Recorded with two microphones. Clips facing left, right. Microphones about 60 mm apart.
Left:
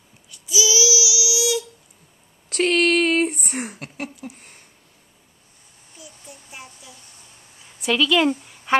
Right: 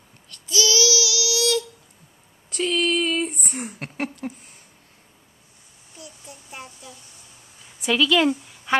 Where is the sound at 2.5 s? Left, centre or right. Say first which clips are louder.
Left 4 dB; left.